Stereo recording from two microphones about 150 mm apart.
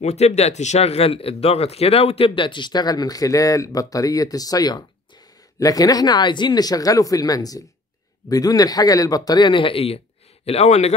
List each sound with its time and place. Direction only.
0.0 s a man's voice: 45° left (ahead or behind)